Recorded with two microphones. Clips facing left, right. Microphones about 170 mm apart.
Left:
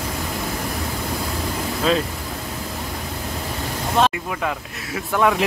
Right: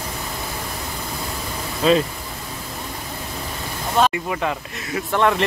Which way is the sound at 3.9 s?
Centre (ahead or behind).